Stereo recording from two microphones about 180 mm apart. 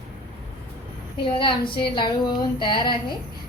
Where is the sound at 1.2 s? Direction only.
25° left (ahead or behind).